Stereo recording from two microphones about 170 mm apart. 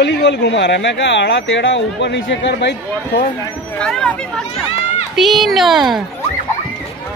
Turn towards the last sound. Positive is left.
turn(degrees=0)  # may be behind; listen again after turning